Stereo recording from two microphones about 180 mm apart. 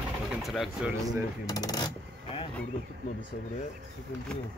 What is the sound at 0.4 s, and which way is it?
Speech, centre (ahead or behind).